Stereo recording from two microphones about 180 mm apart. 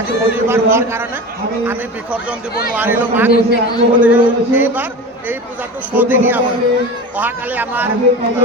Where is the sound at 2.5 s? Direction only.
60° left (ahead or behind).